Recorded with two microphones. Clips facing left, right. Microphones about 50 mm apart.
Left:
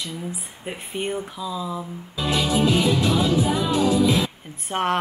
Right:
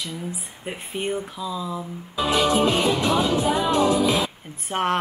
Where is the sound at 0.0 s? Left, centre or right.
Centre.